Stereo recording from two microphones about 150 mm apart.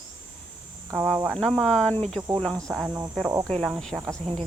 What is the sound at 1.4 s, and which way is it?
Speech, 5° left (ahead or behind).